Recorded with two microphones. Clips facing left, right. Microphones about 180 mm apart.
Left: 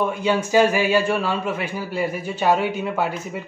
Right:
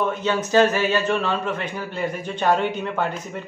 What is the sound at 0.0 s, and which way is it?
A man's voice, 10° left (ahead or behind).